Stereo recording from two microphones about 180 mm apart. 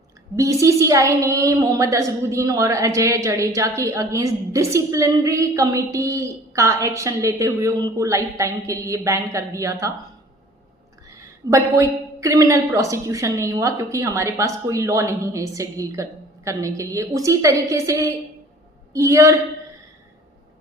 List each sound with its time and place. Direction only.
0.3 s a woman's voice: 15° right (ahead or behind)
11.5 s a woman's voice: 20° right (ahead or behind)